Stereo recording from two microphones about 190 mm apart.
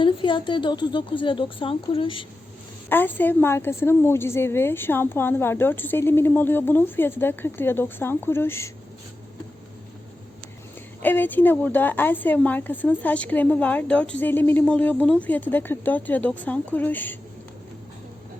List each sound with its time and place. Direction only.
0.0 s speech: 25° left (ahead or behind)
2.9 s a woman's voice: 10° left (ahead or behind)
11.0 s a woman's voice: 10° left (ahead or behind)